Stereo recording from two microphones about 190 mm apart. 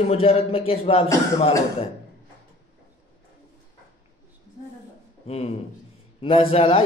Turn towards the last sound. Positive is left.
turn(degrees=30)  # may be behind; listen again after turning